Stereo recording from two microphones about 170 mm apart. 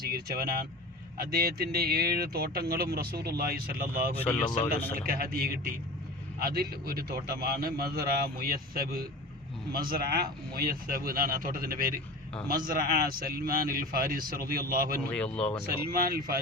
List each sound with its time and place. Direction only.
0.0 s speech: 60° right (ahead or behind)
4.2 s speech: 10° left (ahead or behind)
4.9 s speech: 60° right (ahead or behind)
9.9 s speech: 65° right (ahead or behind)
15.1 s speech: 5° left (ahead or behind)
15.9 s speech: 60° right (ahead or behind)